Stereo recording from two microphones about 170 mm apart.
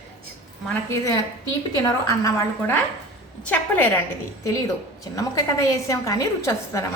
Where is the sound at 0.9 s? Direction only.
20° left (ahead or behind).